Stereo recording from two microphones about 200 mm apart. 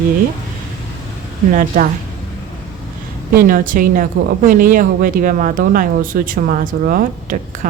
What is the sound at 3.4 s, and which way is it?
Speech, 45° right (ahead or behind).